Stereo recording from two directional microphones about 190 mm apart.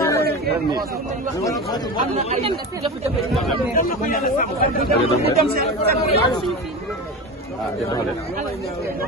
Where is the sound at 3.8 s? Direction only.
50° left (ahead or behind).